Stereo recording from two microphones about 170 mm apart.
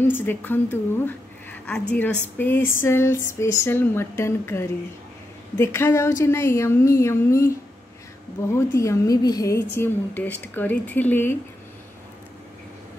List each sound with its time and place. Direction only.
0.0 s a woman's voice: 10° left (ahead or behind)
8.5 s a woman's voice: 15° left (ahead or behind)